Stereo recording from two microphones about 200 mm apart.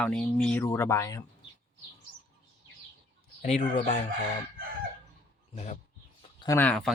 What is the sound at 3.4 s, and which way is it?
Speech, 35° left (ahead or behind).